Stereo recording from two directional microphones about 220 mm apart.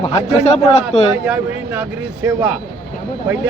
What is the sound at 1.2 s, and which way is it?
Speech, 5° right (ahead or behind).